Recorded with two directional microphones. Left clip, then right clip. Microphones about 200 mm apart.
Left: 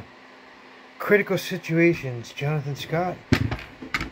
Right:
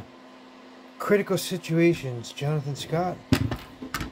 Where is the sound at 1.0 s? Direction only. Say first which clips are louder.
Left 3 dB; 5° right (ahead or behind).